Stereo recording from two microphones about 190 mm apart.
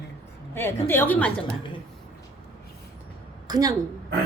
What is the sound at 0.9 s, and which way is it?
Speech, 10° left (ahead or behind).